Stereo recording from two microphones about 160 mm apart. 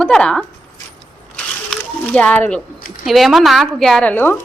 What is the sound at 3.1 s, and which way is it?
A woman's voice, centre (ahead or behind).